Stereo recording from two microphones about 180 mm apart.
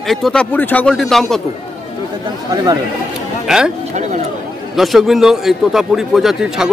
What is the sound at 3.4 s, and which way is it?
Speech, 5° right (ahead or behind).